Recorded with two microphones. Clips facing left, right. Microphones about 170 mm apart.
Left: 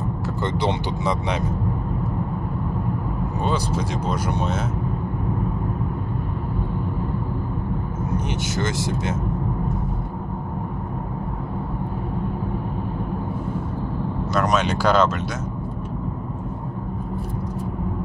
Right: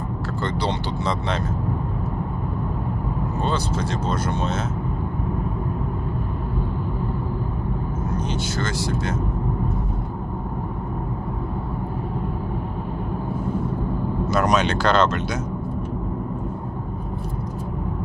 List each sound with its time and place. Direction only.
0.6 s speech: 20° left (ahead or behind)
3.4 s speech: 15° left (ahead or behind)
8.3 s speech: 20° left (ahead or behind)
14.3 s speech: centre (ahead or behind)